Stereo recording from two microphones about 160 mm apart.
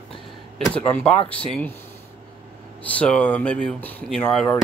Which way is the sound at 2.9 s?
5° left (ahead or behind).